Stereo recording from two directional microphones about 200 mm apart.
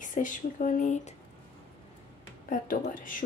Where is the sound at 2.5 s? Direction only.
40° left (ahead or behind).